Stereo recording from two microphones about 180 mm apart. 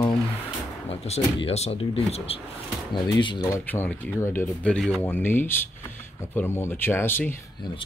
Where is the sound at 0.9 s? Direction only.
35° left (ahead or behind).